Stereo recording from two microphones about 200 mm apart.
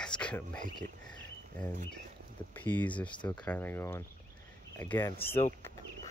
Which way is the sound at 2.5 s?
10° left (ahead or behind).